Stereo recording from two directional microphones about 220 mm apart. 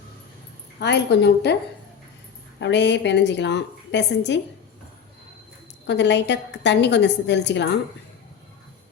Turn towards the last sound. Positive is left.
turn(degrees=50)  # may be behind; listen again after turning